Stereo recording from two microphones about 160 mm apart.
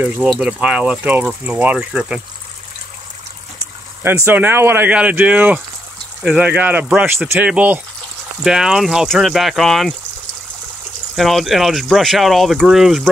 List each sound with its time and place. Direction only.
0.0 s speech: 5° right (ahead or behind)
4.0 s speech: 15° right (ahead or behind); by 9.9 s centre (ahead or behind)
11.1 s speech: centre (ahead or behind)